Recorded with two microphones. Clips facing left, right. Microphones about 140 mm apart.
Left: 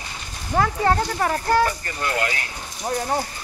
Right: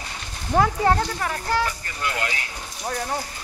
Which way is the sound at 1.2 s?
45° left (ahead or behind).